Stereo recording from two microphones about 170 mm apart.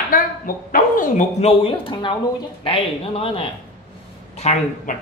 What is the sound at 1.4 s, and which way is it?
Speech, 30° left (ahead or behind).